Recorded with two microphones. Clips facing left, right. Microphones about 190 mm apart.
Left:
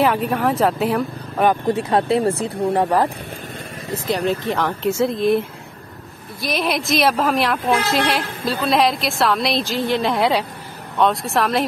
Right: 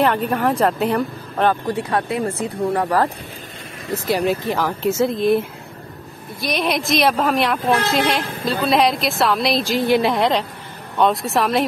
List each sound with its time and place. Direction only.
0.0 s a woman's voice: 5° left (ahead or behind)
1.7 s speech: 25° left (ahead or behind)
4.1 s a woman's voice: 5° right (ahead or behind)
6.4 s a woman's voice: centre (ahead or behind)
9.7 s a woman's voice: 10° right (ahead or behind)
10.1 s a woman's voice: 5° left (ahead or behind)